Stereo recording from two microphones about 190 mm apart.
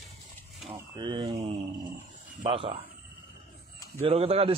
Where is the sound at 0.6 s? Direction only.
Centre (ahead or behind).